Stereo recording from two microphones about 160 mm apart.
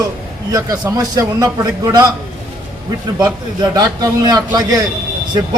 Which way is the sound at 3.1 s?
25° right (ahead or behind).